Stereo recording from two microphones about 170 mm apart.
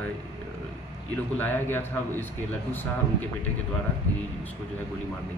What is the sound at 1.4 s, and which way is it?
Speech, 15° left (ahead or behind).